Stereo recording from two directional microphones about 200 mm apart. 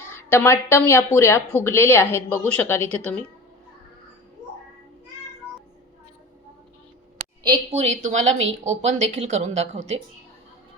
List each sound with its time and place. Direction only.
0.1 s speech: 10° left (ahead or behind)
7.4 s a woman's voice: 20° right (ahead or behind)
7.8 s a woman's voice: 35° right (ahead or behind)